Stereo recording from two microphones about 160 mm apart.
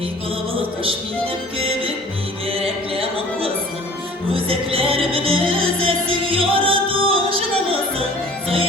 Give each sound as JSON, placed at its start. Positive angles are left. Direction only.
{"t": 1.5, "sound": "music", "side_deg": -35}
{"t": 2.9, "sound": "music", "side_deg": -35}